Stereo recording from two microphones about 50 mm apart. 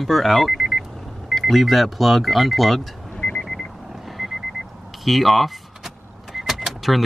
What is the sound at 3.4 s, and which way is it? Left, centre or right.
Vehicle, centre.